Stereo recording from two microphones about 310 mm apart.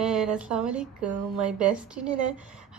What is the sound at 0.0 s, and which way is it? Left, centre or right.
Speech, centre.